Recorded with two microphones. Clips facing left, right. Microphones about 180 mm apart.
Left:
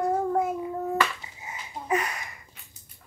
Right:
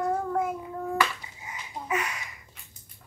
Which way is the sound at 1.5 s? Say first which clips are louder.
Left 3 dB; 35° left (ahead or behind).